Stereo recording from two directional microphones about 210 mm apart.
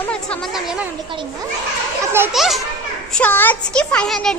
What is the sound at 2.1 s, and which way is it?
Speech, 5° right (ahead or behind).